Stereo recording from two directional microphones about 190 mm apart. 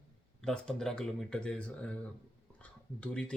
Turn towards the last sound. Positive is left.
turn(degrees=5)  # may be behind; listen again after turning